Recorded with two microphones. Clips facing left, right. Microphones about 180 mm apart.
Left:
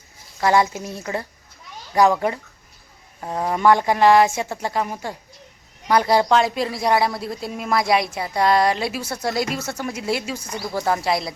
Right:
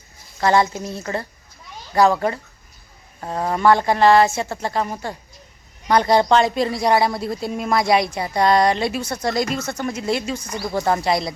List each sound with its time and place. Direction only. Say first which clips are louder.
0.3 s a woman's voice: right 1 dB; 10° left (ahead or behind)